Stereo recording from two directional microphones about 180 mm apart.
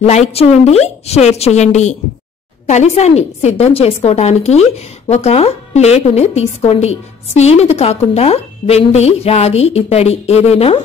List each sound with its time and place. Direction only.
0.0 s a woman's voice: 35° left (ahead or behind)